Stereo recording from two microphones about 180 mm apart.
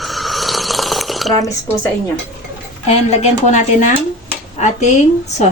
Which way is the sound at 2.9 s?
40° left (ahead or behind).